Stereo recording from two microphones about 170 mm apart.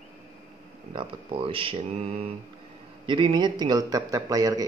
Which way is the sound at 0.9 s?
30° right (ahead or behind).